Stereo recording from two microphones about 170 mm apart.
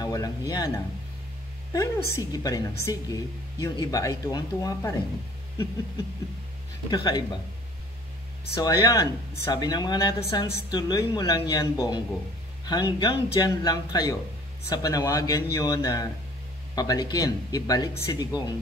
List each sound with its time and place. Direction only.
0.0 s a sound: 20° left (ahead or behind)
1.7 s a woman's voice: 20° left (ahead or behind)
6.9 s a woman's voice: 25° left (ahead or behind)
8.5 s a woman's voice: 25° left (ahead or behind)